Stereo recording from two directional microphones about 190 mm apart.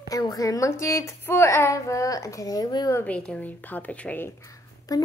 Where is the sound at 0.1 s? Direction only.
20° left (ahead or behind).